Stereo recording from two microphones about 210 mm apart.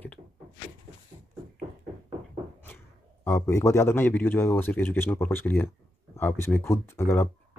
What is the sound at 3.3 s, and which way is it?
Speech, 15° left (ahead or behind).